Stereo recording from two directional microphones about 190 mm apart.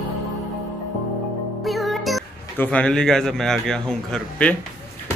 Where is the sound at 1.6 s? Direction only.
Centre (ahead or behind).